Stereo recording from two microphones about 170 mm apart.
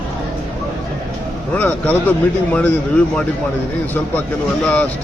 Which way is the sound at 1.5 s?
10° left (ahead or behind).